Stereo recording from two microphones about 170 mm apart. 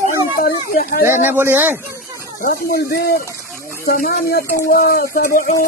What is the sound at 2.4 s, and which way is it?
Speech, 65° left (ahead or behind).